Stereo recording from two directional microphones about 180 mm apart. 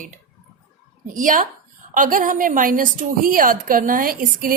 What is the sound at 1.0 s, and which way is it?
A woman's voice, 45° right (ahead or behind).